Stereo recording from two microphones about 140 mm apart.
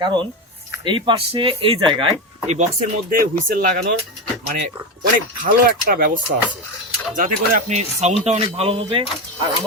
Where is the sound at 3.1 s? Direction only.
80° right.